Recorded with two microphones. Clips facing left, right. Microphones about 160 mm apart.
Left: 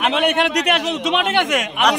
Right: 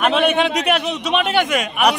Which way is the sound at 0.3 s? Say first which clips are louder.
Right 1 dB; 70° left (ahead or behind).